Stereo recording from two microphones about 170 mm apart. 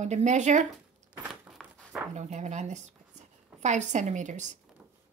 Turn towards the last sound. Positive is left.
turn(degrees=-45)  # may be behind; listen again after turning